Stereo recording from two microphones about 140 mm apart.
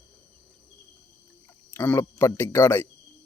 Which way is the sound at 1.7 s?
15° left (ahead or behind).